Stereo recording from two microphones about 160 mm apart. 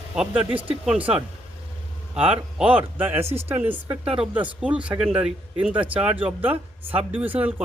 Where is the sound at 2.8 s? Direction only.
10° right (ahead or behind).